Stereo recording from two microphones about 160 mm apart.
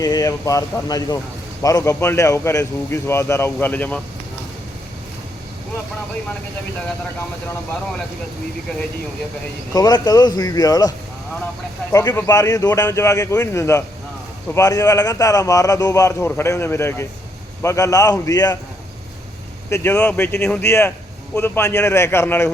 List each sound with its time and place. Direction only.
0.0 s a man's voice: 20° left (ahead or behind)
9.7 s a man's voice: 25° left (ahead or behind)
19.7 s speech: 10° left (ahead or behind)